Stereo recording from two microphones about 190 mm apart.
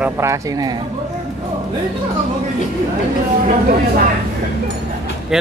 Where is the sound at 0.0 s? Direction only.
15° right (ahead or behind).